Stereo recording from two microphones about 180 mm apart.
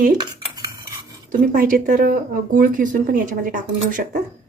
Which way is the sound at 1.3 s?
45° right (ahead or behind).